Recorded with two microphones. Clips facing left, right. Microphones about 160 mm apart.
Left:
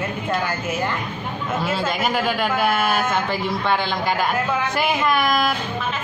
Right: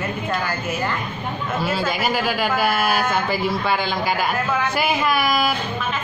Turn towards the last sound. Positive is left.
turn(degrees=-5)  # may be behind; listen again after turning